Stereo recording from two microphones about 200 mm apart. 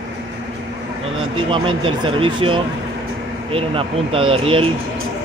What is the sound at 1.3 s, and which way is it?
Speech, 25° right (ahead or behind).